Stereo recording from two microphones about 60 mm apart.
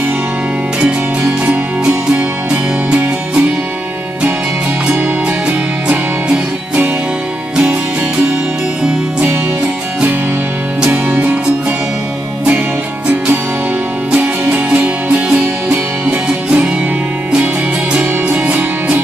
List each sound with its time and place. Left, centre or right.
1.4 s music: right
5.9 s music: centre
11.1 s music: right
14.1 s music: right
18.3 s music: right